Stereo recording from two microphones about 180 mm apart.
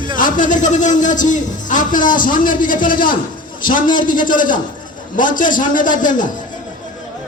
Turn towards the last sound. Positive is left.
turn(degrees=45)  # may be behind; listen again after turning